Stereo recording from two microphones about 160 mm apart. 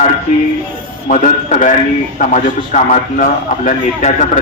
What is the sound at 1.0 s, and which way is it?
A man's voice, 50° left (ahead or behind).